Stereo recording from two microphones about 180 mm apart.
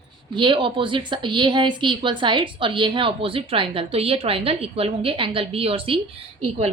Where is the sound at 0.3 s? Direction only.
25° right (ahead or behind).